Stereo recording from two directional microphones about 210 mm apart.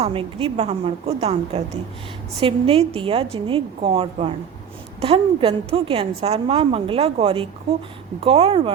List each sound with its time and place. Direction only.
0.0 s a woman's voice: 25° right (ahead or behind)